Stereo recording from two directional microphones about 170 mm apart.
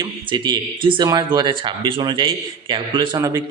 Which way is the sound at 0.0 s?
25° right (ahead or behind).